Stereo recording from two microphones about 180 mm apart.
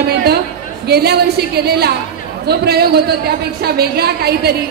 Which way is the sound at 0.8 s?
65° right (ahead or behind).